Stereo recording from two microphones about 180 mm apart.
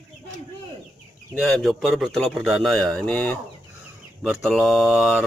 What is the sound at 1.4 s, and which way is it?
Speech, centre (ahead or behind).